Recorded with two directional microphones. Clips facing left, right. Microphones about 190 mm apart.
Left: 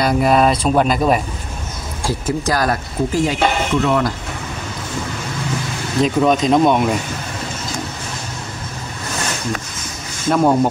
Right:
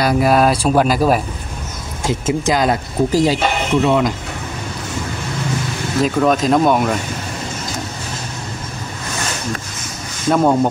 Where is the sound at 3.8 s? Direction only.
20° right (ahead or behind).